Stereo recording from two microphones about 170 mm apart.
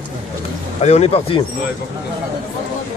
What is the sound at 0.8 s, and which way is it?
Speech, 40° left (ahead or behind).